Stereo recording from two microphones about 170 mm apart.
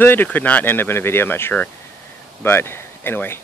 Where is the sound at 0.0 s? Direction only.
10° left (ahead or behind).